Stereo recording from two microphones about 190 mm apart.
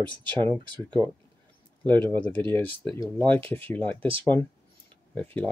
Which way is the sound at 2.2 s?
10° left (ahead or behind).